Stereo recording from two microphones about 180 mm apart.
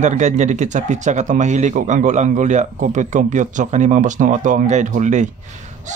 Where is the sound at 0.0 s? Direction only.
40° right (ahead or behind).